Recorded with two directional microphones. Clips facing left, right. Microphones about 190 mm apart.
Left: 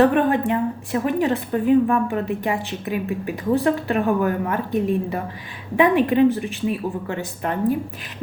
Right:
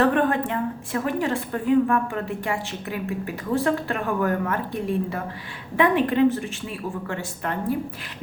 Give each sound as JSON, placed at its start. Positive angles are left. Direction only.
{"t": 0.0, "sound": "a woman's voice", "side_deg": 15}